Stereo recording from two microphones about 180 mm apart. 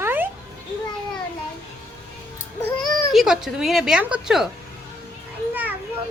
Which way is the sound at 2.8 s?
Centre (ahead or behind).